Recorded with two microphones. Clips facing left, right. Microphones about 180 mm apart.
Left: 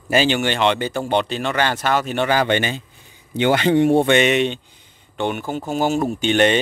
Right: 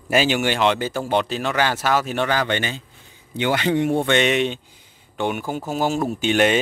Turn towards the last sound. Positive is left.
turn(degrees=-5)  # may be behind; listen again after turning